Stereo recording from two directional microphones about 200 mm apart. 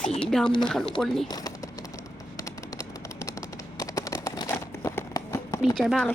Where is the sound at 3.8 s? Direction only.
15° left (ahead or behind).